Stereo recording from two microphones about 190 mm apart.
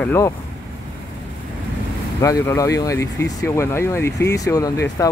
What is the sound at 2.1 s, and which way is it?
Speech, 15° left (ahead or behind).